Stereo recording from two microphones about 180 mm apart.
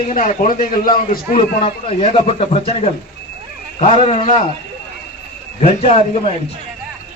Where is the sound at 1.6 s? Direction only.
35° left (ahead or behind).